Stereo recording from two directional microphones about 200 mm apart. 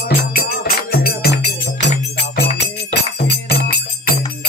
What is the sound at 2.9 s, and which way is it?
Music, 55° left (ahead or behind).